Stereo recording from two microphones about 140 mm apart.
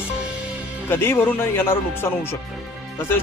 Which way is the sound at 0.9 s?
15° left (ahead or behind).